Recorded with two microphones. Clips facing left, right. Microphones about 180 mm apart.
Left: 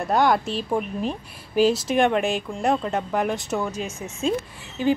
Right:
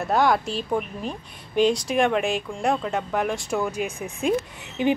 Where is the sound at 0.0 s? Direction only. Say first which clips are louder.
Left 1 dB; centre (ahead or behind).